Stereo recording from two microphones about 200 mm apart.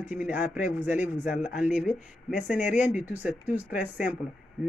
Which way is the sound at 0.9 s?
40° left (ahead or behind).